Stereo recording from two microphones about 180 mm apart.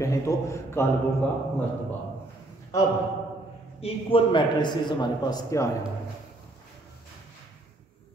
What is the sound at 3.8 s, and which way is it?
A man's voice, 30° left (ahead or behind).